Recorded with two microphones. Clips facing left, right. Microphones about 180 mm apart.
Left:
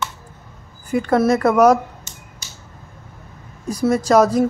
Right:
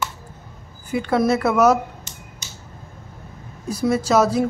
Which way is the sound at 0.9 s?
10° right (ahead or behind).